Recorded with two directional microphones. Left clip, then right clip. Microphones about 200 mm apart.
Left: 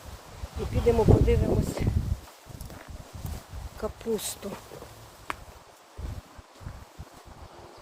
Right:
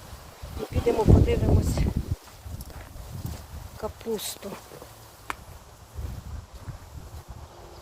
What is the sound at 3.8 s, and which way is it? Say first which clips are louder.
Speech: even; 20° left (ahead or behind).